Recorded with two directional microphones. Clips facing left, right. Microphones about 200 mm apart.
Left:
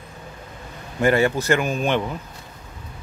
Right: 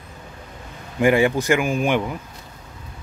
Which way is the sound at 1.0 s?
15° right (ahead or behind).